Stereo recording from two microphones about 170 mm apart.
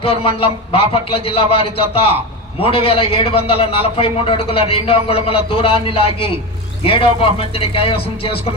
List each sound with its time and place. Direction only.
0.0 s a man's voice: 35° left (ahead or behind)